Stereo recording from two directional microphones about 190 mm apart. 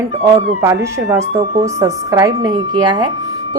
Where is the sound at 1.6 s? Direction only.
15° right (ahead or behind).